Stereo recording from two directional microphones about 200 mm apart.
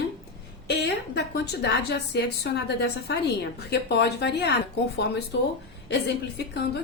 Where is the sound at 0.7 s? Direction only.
60° left (ahead or behind).